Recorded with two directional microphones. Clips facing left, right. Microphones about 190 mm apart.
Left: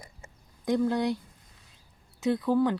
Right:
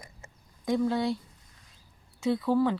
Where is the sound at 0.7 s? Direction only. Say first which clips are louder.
Left 1 dB; centre (ahead or behind).